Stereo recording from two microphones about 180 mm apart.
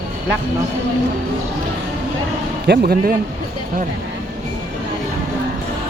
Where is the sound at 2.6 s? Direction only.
60° right (ahead or behind).